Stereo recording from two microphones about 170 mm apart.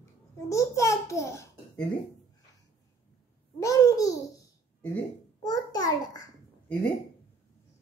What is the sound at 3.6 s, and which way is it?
A child's voice, 20° left (ahead or behind).